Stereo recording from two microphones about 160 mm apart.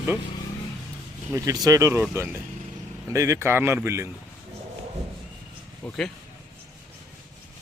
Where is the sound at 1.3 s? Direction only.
20° right (ahead or behind).